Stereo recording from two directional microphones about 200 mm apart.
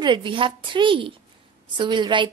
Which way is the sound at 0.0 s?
25° right (ahead or behind).